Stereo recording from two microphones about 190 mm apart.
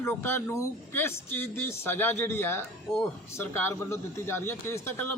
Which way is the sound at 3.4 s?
15° left (ahead or behind).